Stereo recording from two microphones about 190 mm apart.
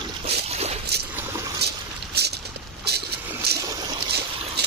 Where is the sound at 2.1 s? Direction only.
60° right (ahead or behind).